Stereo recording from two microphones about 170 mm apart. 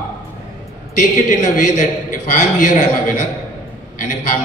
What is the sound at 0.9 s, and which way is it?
A man's voice, 50° left (ahead or behind).